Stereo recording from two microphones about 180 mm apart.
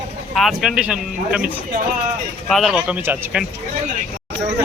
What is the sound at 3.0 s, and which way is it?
Speech, 10° right (ahead or behind).